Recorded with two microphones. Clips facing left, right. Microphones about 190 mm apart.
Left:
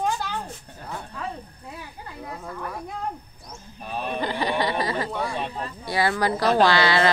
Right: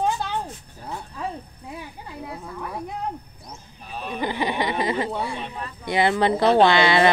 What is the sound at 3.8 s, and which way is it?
Speech, 60° left (ahead or behind).